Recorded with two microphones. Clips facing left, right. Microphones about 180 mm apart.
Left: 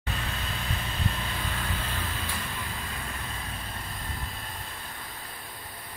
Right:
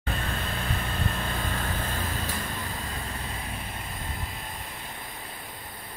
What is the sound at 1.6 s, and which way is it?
Light engine, 45° right (ahead or behind).